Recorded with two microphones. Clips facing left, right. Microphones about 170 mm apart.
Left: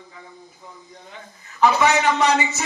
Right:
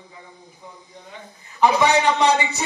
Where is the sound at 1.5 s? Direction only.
15° right (ahead or behind).